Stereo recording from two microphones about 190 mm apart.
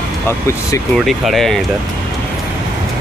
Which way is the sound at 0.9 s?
Centre (ahead or behind).